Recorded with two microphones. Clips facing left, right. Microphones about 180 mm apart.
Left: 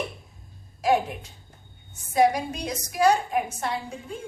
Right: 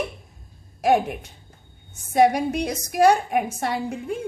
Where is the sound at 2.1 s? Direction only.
65° right (ahead or behind).